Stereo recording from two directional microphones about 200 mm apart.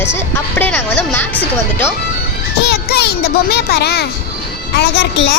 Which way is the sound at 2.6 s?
55° left (ahead or behind).